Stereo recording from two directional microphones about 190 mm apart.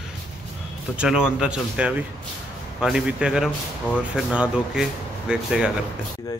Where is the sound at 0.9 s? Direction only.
5° right (ahead or behind).